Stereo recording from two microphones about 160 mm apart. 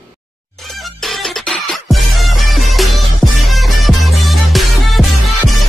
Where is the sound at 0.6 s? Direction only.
Centre (ahead or behind).